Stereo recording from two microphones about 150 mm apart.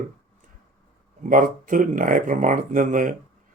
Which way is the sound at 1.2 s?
65° right (ahead or behind).